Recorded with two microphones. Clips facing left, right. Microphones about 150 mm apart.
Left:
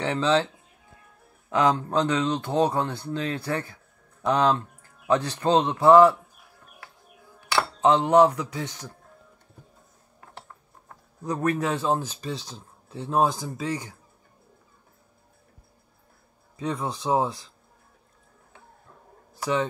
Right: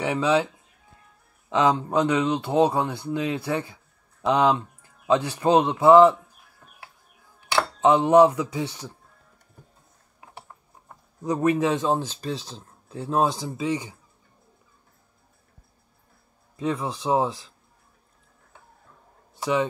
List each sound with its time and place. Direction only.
0.0 s speech: 10° right (ahead or behind)
1.5 s speech: 15° right (ahead or behind)
7.3 s speech: 20° right (ahead or behind)
10.2 s speech: 10° right (ahead or behind)
13.7 s speech: 15° right (ahead or behind)
16.5 s a man's voice: centre (ahead or behind)